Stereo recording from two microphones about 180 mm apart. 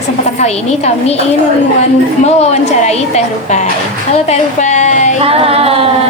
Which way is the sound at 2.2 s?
40° left (ahead or behind).